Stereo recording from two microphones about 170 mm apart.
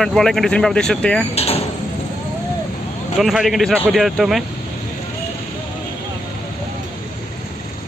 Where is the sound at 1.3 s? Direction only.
35° left (ahead or behind).